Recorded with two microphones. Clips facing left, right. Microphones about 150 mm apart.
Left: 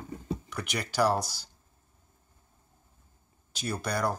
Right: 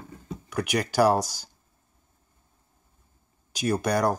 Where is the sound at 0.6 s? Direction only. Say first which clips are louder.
Right 6 dB; 10° right (ahead or behind).